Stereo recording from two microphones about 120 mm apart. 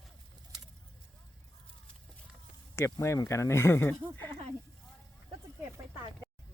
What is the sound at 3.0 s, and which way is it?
Speech, 25° left (ahead or behind).